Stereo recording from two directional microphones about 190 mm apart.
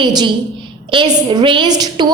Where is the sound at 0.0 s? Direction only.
25° right (ahead or behind).